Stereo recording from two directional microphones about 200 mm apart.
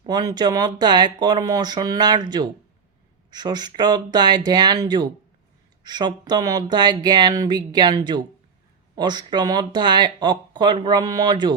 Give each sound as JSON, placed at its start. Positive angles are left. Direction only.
{"t": 0.0, "sound": "speech", "side_deg": -20}